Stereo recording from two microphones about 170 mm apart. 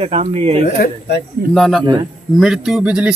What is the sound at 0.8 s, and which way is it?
Speech, 80° left.